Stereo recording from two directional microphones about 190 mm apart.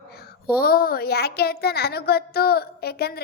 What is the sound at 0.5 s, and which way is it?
Speech, 50° left (ahead or behind).